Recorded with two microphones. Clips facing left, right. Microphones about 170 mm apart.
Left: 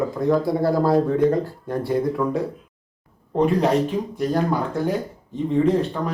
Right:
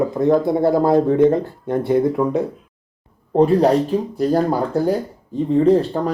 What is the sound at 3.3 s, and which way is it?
Speech, 35° right (ahead or behind).